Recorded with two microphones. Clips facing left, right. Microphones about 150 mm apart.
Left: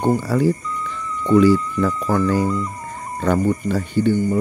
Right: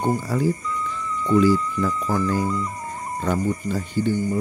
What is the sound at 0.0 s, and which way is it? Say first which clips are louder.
Speech: left 4 dB; 75° left (ahead or behind).